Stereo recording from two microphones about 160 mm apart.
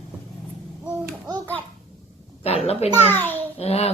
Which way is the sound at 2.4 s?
40° left (ahead or behind).